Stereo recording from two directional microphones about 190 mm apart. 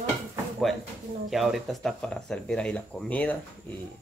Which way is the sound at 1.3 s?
Centre (ahead or behind).